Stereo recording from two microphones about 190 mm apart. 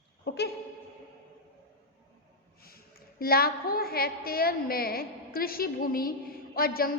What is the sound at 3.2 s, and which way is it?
A woman's voice, 50° left (ahead or behind).